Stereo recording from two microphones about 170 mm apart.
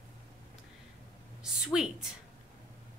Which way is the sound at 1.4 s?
5° right (ahead or behind).